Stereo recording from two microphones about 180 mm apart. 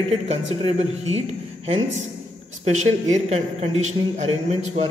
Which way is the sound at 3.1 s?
40° right (ahead or behind).